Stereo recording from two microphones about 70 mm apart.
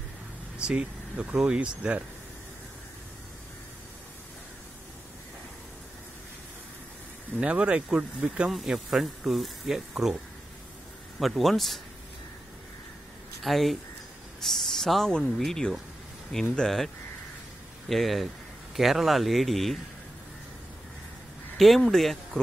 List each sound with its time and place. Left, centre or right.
0.6 s speech: centre
7.3 s speech: centre
8.5 s speech: centre
13.4 s speech: centre
21.5 s speech: centre